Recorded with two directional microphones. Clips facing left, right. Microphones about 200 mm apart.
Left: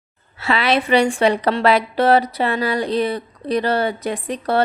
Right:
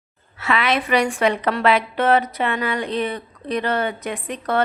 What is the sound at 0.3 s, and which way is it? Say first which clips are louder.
A woman's voice: left 2 dB; 30° left (ahead or behind).